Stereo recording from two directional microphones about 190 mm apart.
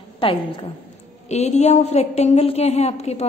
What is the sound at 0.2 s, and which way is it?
A woman's voice, 25° left (ahead or behind).